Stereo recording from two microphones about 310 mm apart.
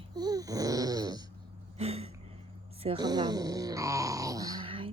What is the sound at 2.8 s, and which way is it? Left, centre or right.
Speech, centre.